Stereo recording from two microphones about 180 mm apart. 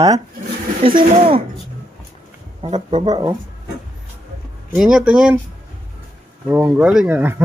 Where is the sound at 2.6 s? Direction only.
25° right (ahead or behind).